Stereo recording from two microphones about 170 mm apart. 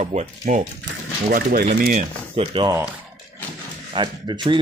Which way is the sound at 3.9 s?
25° right (ahead or behind).